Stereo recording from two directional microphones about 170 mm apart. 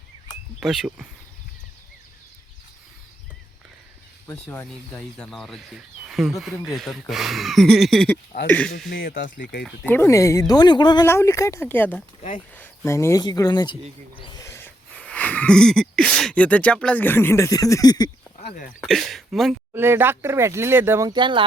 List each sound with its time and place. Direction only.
0.6 s speech: 5° right (ahead or behind)
4.4 s speech: 5° left (ahead or behind)
8.9 s speech: 60° left (ahead or behind)
9.8 s speech: 15° left (ahead or behind)
11.0 s speech: 15° left (ahead or behind)
14.4 s a sound: 10° left (ahead or behind)
18.3 s speech: 50° left (ahead or behind)
18.8 s speech: centre (ahead or behind)
19.7 s speech: 15° right (ahead or behind)
21.1 s speech: 25° right (ahead or behind)